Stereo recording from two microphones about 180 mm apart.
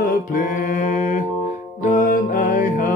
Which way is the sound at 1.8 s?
45° left (ahead or behind).